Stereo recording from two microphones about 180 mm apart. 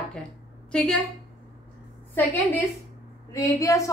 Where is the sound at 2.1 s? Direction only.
10° left (ahead or behind).